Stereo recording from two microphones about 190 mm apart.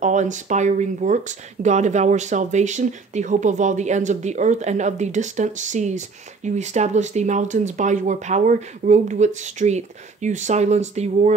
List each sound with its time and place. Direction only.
0.0 s speech: 40° right (ahead or behind)